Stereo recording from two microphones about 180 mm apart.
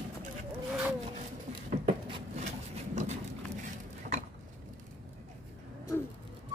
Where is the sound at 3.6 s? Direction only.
40° right (ahead or behind).